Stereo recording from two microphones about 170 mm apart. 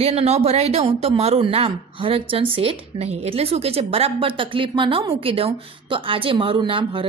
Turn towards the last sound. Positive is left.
turn(degrees=-30)  # may be behind; listen again after turning